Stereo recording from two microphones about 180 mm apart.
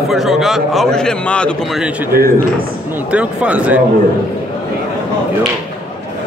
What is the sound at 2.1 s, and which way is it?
Speech, 55° right (ahead or behind).